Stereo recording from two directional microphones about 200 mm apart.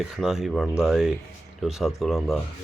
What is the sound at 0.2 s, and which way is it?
Speech, centre (ahead or behind).